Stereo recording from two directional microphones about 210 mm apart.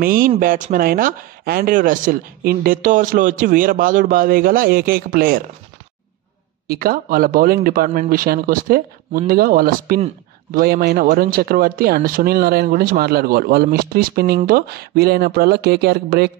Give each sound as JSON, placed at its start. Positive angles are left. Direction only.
{"t": 0.0, "sound": "speech", "side_deg": -45}
{"t": 6.7, "sound": "speech", "side_deg": -45}